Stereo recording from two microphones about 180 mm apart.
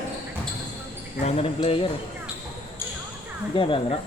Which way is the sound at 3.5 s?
30° left (ahead or behind).